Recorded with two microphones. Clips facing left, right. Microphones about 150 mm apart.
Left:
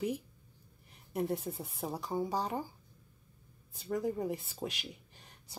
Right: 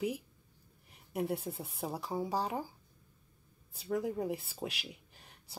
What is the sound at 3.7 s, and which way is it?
Speech, 5° right (ahead or behind).